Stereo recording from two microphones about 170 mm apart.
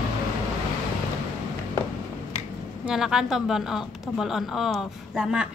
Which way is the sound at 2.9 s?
5° right (ahead or behind).